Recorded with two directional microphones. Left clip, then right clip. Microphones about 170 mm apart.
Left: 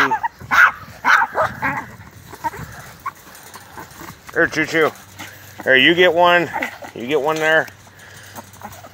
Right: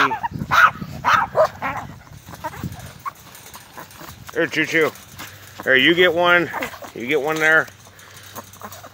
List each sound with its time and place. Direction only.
0.1 s dog: 15° right (ahead or behind)
4.4 s speech: 10° right (ahead or behind)
6.6 s a sound: 30° right (ahead or behind)
7.0 s speech: 15° right (ahead or behind)